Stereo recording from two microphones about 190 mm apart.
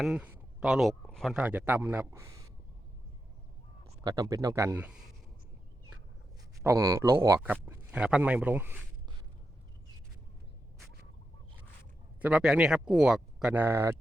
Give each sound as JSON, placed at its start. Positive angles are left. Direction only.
{"t": 0.0, "sound": "speech", "side_deg": -5}
{"t": 4.0, "sound": "speech", "side_deg": -20}
{"t": 6.6, "sound": "speech", "side_deg": -15}
{"t": 12.2, "sound": "speech", "side_deg": -5}